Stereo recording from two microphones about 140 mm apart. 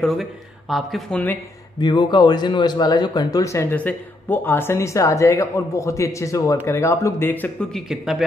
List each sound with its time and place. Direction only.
0.0 s speech: centre (ahead or behind)
1.8 s speech: 30° left (ahead or behind)
3.7 s speech: 10° left (ahead or behind)
7.7 s speech: centre (ahead or behind)